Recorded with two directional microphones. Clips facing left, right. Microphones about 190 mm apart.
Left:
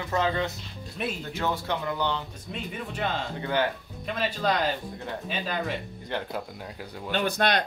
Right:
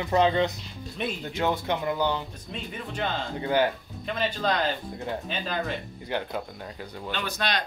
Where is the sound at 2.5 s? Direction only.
5° left (ahead or behind).